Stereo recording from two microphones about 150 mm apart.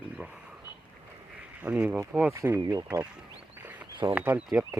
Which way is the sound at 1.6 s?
10° right (ahead or behind).